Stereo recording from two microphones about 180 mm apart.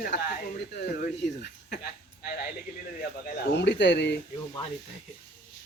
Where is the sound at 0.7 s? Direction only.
60° left (ahead or behind).